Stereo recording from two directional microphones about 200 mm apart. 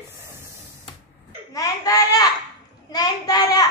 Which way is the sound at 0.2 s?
10° right (ahead or behind).